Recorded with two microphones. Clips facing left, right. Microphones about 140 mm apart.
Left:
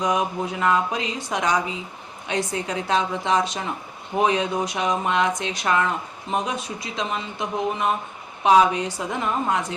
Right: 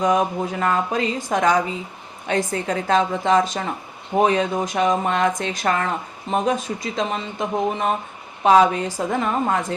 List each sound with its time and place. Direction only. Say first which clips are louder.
0.0 s speech: right 4 dB; 45° right (ahead or behind)